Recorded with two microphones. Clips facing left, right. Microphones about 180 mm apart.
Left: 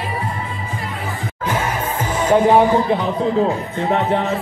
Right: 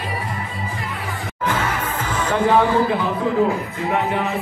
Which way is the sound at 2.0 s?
15° left (ahead or behind).